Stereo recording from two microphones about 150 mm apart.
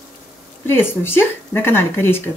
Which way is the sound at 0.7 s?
15° left (ahead or behind).